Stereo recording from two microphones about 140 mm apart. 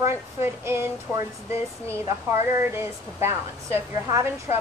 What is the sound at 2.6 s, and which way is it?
A woman's voice, 20° right (ahead or behind).